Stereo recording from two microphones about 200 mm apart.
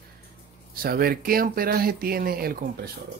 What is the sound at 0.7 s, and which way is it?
Speech, 50° right (ahead or behind).